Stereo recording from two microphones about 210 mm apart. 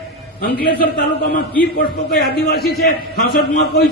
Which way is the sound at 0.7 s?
50° left (ahead or behind).